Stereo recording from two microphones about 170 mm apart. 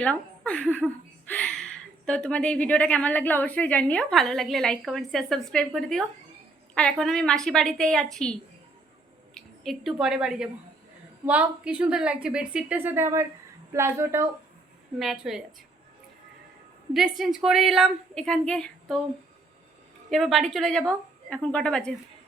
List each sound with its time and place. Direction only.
0.0 s a woman's voice: 5° left (ahead or behind); by 14.3 s 15° right (ahead or behind)
14.9 s a woman's voice: centre (ahead or behind)
16.9 s a woman's voice: centre (ahead or behind)
20.1 s a woman's voice: centre (ahead or behind)